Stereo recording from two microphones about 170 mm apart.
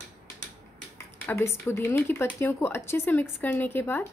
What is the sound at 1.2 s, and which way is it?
A woman's voice, 15° left (ahead or behind).